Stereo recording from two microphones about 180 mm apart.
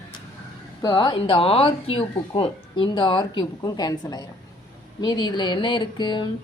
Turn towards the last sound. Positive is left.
turn(degrees=25)  # may be behind; listen again after turning